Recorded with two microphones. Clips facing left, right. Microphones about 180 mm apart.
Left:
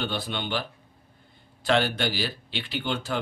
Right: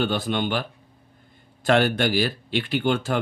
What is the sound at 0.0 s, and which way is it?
Speech, 50° right (ahead or behind).